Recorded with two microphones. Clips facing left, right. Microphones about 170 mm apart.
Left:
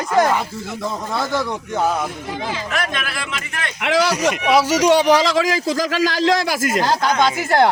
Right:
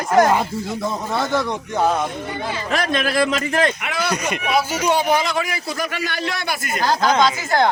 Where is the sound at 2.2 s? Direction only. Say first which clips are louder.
Left 1 dB; 90° left.